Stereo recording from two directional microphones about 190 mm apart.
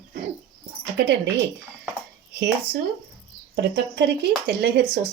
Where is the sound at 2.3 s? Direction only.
55° right (ahead or behind).